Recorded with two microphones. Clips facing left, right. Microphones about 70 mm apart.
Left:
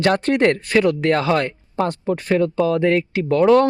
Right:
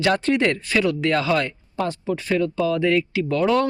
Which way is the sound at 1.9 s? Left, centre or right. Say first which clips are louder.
Left 2 dB; left.